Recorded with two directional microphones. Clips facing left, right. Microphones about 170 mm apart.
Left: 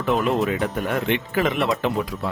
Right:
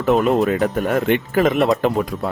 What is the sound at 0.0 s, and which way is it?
Speech, 45° right (ahead or behind).